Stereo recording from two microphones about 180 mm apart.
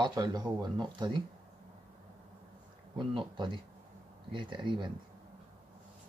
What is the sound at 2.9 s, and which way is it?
Speech, 25° right (ahead or behind).